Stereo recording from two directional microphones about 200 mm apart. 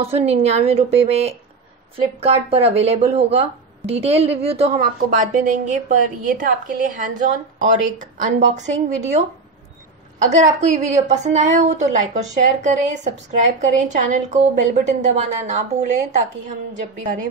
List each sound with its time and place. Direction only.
0.1 s a woman's voice: 30° right (ahead or behind)
4.7 s a woman's voice: 40° right (ahead or behind)